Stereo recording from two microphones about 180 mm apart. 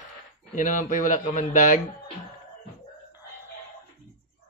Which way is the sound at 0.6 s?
45° left (ahead or behind).